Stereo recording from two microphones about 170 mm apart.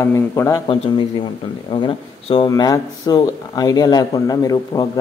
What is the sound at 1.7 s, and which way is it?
Speech, 30° left (ahead or behind).